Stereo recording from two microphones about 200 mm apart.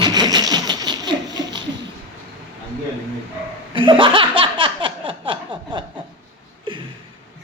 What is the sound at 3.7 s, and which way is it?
Laughter, 25° right (ahead or behind).